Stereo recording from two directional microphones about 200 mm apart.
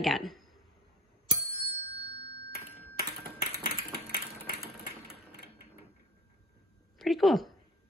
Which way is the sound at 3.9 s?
55° right (ahead or behind).